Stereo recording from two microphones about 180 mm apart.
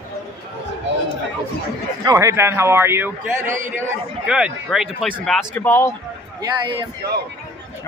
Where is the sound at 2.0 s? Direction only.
20° right (ahead or behind); by 5.9 s 10° left (ahead or behind).